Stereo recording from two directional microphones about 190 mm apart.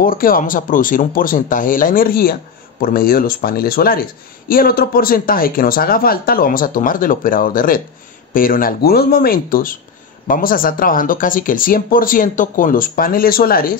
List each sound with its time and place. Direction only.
0.0 s speech: 50° left (ahead or behind)